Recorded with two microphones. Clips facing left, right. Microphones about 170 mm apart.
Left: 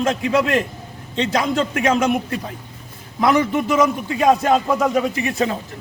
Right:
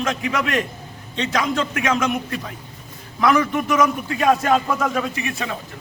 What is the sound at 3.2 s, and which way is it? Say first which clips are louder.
Speech: left 1 dB; 30° left (ahead or behind).